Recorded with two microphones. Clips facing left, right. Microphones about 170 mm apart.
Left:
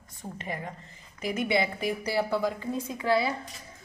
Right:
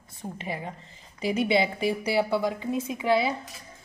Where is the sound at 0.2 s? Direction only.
20° right (ahead or behind).